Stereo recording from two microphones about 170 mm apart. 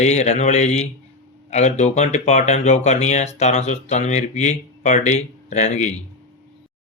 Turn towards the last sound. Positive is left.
turn(degrees=40)  # may be behind; listen again after turning